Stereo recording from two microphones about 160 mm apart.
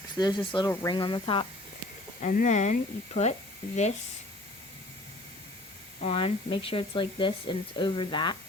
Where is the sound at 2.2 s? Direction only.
50° left (ahead or behind).